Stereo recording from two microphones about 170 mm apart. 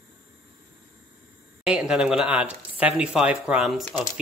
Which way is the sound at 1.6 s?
5° right (ahead or behind).